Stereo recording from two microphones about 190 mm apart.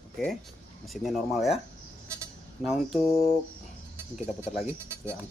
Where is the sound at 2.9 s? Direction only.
30° left (ahead or behind).